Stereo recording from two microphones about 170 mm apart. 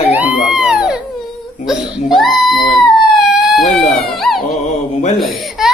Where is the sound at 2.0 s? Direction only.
Centre (ahead or behind).